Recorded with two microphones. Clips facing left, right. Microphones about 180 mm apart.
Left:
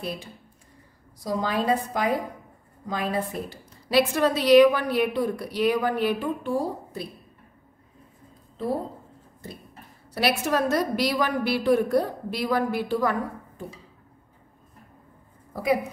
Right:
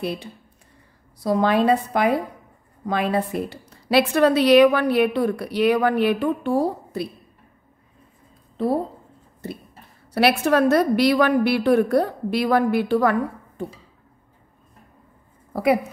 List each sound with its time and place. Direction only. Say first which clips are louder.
0.0 s a woman's voice: right 5 dB; 70° right (ahead or behind)
10.1 s a woman's voice: right 6 dB; 65° right (ahead or behind)
15.5 s speech: right 5 dB; 65° right (ahead or behind)